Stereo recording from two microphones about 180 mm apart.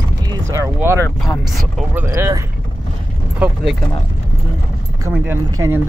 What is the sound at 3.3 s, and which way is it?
Keys jangling, 5° right (ahead or behind).